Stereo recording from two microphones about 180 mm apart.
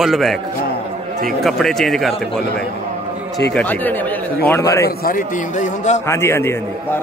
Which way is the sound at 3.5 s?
10° left (ahead or behind).